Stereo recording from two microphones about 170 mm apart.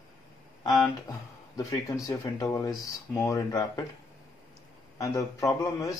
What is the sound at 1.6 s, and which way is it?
Speech, 20° left (ahead or behind).